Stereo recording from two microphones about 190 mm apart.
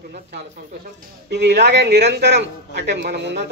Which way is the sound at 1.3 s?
65° right (ahead or behind).